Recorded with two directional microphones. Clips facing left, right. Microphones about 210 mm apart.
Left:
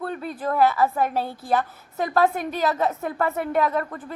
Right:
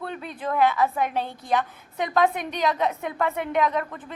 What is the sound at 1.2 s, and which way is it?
A woman's voice, 5° left (ahead or behind).